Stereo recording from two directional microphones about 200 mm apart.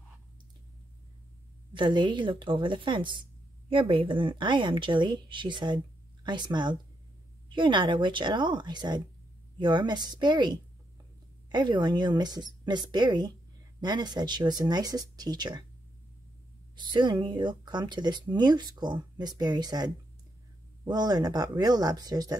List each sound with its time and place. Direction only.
1.7 s speech: 25° right (ahead or behind)
16.7 s speech: 20° right (ahead or behind)